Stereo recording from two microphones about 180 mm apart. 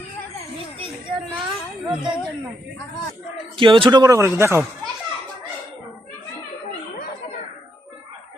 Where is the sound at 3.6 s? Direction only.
25° right (ahead or behind).